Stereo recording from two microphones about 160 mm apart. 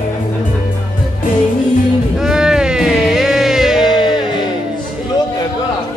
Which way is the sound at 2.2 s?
5° right (ahead or behind).